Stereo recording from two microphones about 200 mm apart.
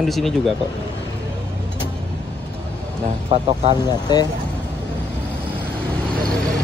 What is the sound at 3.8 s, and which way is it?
Speech, 20° left (ahead or behind).